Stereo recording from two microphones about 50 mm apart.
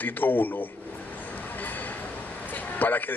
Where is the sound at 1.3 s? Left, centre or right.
Left.